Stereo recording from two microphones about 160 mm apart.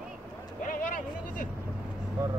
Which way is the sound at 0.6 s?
55° left (ahead or behind).